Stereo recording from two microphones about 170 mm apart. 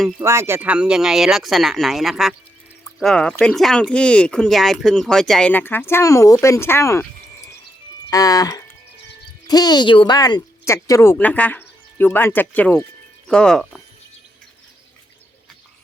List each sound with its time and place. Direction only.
0.2 s speech: 15° right (ahead or behind); by 7.1 s 15° left (ahead or behind)
8.1 s speech: 20° left (ahead or behind); by 13.8 s 5° left (ahead or behind)